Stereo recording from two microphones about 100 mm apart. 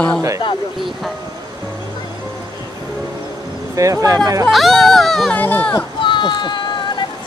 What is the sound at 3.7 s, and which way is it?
Speech, 35° right (ahead or behind).